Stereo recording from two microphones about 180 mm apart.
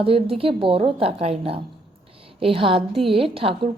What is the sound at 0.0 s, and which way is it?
A woman's voice, 30° right (ahead or behind).